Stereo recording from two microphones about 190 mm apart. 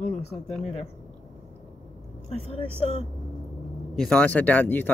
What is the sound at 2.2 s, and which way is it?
Speech, 35° left (ahead or behind).